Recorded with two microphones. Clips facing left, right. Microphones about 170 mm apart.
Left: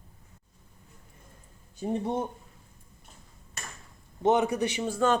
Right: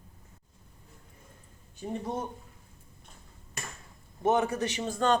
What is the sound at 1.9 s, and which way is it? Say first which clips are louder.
Speech: left 5 dB; 25° left (ahead or behind).